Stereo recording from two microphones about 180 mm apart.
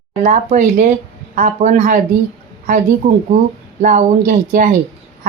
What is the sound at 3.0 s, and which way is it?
Speech, 40° right (ahead or behind).